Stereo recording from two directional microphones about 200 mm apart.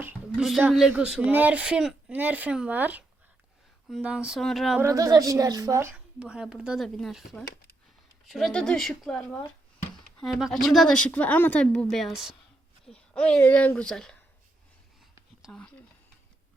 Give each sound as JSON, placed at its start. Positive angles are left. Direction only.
{"t": 0.0, "sound": "a woman's voice", "side_deg": -5}
{"t": 4.8, "sound": "speech", "side_deg": -15}
{"t": 6.1, "sound": "a woman's voice", "side_deg": -5}
{"t": 15.4, "sound": "speech", "side_deg": 0}